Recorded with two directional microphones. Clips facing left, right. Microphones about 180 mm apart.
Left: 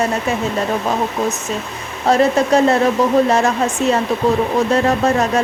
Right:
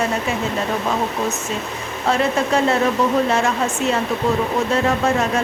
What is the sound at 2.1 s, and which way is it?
Speech, 40° left (ahead or behind).